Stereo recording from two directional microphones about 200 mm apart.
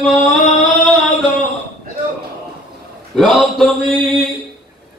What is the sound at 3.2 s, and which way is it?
Speech, centre (ahead or behind).